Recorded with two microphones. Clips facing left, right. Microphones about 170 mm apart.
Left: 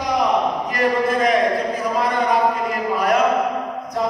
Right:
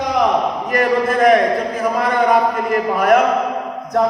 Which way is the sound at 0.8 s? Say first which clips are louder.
Right 4 dB; 55° right (ahead or behind).